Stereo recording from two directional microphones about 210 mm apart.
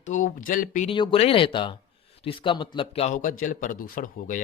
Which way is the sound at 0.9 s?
25° left (ahead or behind).